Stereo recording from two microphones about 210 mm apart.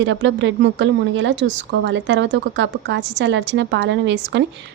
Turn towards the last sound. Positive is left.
turn(degrees=-60)  # may be behind; listen again after turning